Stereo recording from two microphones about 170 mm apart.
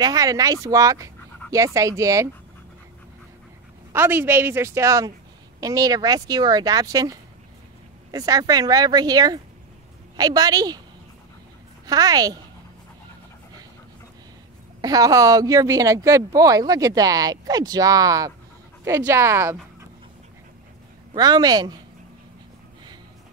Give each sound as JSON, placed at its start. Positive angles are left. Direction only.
{"t": 0.0, "sound": "a woman's voice", "side_deg": -20}
{"t": 3.9, "sound": "a woman's voice", "side_deg": -15}
{"t": 11.8, "sound": "a woman's voice", "side_deg": -20}
{"t": 14.8, "sound": "a woman's voice", "side_deg": -20}
{"t": 21.1, "sound": "a woman's voice", "side_deg": -25}